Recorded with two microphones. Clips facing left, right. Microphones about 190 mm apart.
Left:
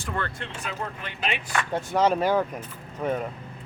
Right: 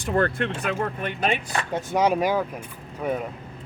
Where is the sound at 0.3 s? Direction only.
65° right (ahead or behind).